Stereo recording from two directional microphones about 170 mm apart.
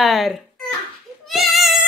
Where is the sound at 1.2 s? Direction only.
Centre (ahead or behind).